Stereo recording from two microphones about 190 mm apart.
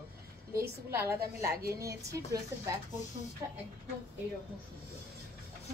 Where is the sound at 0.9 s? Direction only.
15° right (ahead or behind).